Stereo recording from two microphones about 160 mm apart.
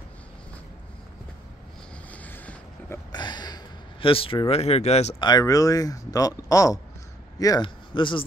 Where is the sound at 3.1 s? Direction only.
25° left (ahead or behind).